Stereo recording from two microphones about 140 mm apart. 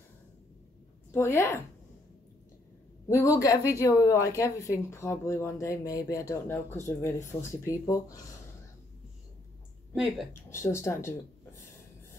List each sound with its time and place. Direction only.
1.1 s a woman's voice: 20° left (ahead or behind)
3.1 s a woman's voice: 20° left (ahead or behind)
10.5 s a woman's voice: 20° left (ahead or behind)